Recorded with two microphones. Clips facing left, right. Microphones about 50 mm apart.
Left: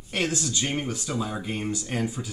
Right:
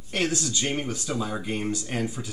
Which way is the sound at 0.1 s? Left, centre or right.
Centre.